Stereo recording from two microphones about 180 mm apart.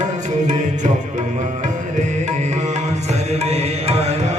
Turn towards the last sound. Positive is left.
turn(degrees=-35)  # may be behind; listen again after turning